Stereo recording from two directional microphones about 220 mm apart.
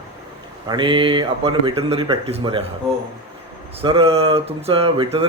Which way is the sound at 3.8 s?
25° right (ahead or behind).